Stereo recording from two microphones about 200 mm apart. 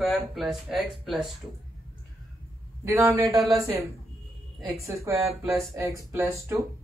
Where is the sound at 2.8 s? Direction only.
15° right (ahead or behind).